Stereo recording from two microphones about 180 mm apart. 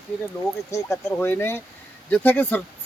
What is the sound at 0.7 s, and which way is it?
Speech, 15° left (ahead or behind).